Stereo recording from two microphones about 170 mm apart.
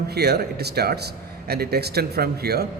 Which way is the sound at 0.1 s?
70° right (ahead or behind).